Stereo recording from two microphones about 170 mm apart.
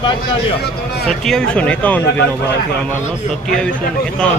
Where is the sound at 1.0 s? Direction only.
5° left (ahead or behind).